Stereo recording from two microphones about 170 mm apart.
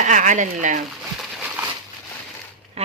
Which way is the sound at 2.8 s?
35° right (ahead or behind).